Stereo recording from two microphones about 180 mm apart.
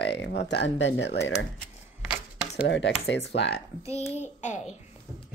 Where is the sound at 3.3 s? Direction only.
70° left (ahead or behind).